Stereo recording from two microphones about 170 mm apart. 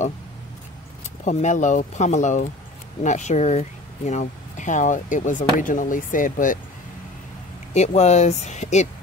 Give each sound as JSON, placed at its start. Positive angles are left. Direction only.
{"t": 1.2, "sound": "speech", "side_deg": 45}
{"t": 7.7, "sound": "speech", "side_deg": 40}